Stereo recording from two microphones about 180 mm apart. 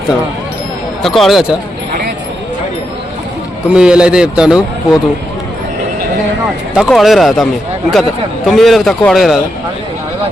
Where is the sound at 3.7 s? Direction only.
5° right (ahead or behind).